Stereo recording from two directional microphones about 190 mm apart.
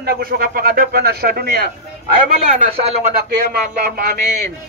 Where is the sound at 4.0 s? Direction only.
50° right (ahead or behind).